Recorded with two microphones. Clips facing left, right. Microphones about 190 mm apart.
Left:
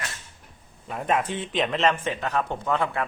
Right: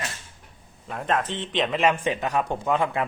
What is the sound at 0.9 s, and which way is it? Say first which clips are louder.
Speech: left 1 dB; 5° left (ahead or behind).